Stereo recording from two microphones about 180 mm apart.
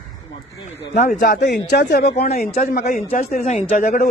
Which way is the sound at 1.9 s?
65° left (ahead or behind).